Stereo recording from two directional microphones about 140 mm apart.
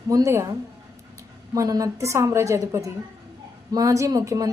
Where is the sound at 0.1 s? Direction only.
20° right (ahead or behind).